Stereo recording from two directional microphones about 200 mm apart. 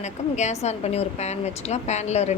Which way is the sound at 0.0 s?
35° left (ahead or behind).